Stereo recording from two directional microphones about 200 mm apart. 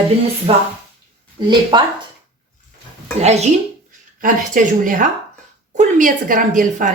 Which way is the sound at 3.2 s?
35° right (ahead or behind).